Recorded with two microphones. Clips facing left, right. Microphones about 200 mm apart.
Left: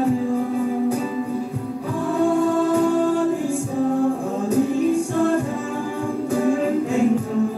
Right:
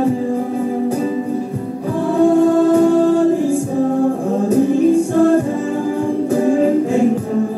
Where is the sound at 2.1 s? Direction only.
45° right (ahead or behind).